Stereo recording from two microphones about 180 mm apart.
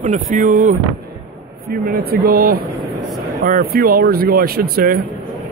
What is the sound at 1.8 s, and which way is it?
Speech, 55° right (ahead or behind).